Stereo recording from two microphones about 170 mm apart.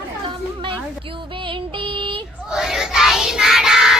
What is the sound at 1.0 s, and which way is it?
Female singing, 30° right (ahead or behind).